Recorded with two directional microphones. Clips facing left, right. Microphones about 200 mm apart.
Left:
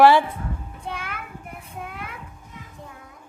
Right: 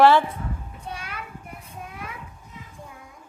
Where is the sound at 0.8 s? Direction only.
55° left (ahead or behind).